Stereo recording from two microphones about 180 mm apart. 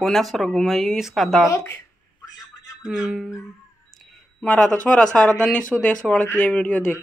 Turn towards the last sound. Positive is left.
turn(degrees=5)  # may be behind; listen again after turning